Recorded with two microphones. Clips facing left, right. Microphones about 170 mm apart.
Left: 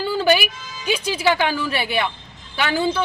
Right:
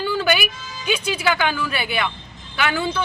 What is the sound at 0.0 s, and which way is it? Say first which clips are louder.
Music: left 3 dB; 30° left (ahead or behind).